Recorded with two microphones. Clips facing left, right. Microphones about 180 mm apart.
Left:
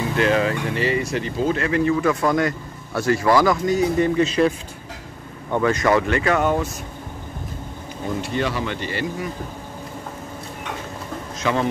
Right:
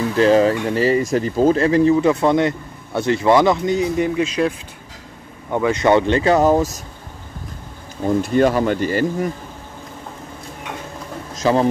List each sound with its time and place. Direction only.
0.1 s speech: 35° right (ahead or behind)
4.0 s speech: 5° right (ahead or behind)
5.8 s speech: 30° right (ahead or behind)
8.2 s speech: 45° right (ahead or behind)
11.4 s speech: 35° right (ahead or behind)